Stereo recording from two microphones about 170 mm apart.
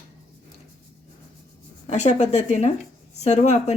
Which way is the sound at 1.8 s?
45° left (ahead or behind).